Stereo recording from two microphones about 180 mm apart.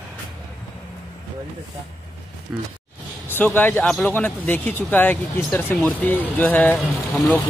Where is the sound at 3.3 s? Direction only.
10° left (ahead or behind).